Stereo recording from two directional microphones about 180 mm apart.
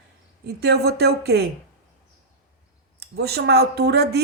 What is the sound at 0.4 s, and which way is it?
Speech, 65° right (ahead or behind).